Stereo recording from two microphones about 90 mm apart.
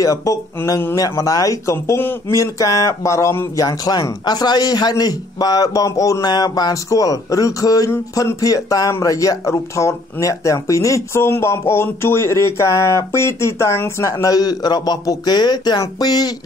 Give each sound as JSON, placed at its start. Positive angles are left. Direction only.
{"t": 0.0, "sound": "speech", "side_deg": 35}
{"t": 3.6, "sound": "a man's voice", "side_deg": 45}
{"t": 14.1, "sound": "a man's voice", "side_deg": 45}